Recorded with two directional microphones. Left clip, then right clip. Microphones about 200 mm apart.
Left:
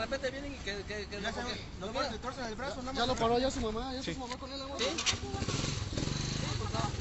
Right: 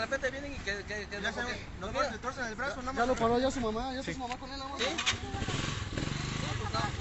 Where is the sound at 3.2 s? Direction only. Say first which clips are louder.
Right 1 dB; 60° right (ahead or behind).